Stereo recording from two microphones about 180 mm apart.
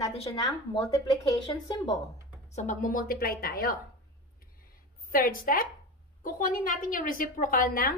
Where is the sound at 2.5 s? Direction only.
45° left (ahead or behind).